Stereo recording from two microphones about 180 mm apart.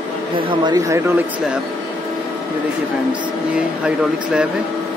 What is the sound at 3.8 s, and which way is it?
Speech, 5° right (ahead or behind).